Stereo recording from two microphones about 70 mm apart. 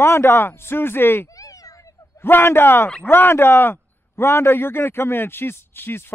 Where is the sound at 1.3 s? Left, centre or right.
Left.